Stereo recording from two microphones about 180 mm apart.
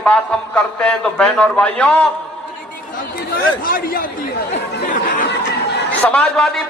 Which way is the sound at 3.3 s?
55° left (ahead or behind).